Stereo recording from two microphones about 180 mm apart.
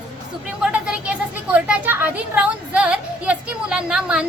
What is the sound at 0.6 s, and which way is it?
Speech, 5° right (ahead or behind).